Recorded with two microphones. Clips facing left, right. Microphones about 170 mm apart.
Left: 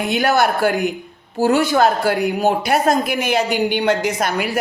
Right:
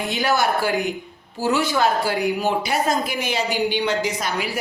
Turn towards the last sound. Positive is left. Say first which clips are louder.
# left 5 dB
turn(degrees=55)  # may be behind; listen again after turning